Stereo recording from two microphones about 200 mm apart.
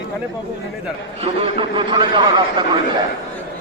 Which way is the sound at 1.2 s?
30° right (ahead or behind).